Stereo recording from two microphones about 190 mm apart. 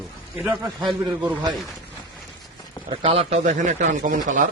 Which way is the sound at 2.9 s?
30° right (ahead or behind).